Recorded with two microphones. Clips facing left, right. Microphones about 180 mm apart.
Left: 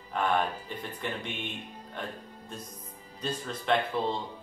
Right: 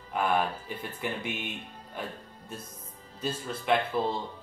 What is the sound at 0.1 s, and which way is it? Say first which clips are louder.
Speech: right 1 dB; 5° right (ahead or behind).